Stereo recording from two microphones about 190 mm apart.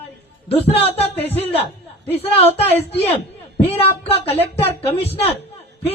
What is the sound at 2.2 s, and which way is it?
Speech, 30° left (ahead or behind).